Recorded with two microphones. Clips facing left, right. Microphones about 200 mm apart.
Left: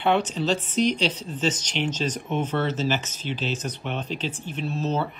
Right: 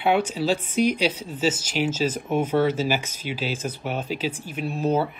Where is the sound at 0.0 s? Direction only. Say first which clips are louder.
Right 1 dB; 10° right (ahead or behind).